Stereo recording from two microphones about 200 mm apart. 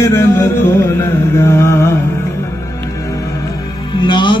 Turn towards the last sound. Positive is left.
turn(degrees=25)  # may be behind; listen again after turning